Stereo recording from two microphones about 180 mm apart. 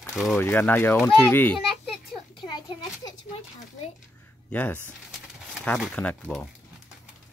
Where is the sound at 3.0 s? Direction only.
20° left (ahead or behind).